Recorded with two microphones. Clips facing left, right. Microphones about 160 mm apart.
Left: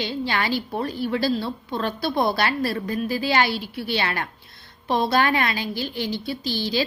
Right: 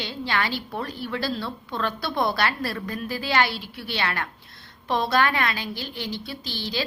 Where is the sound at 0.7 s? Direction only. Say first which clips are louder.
Left 6 dB; 30° left (ahead or behind).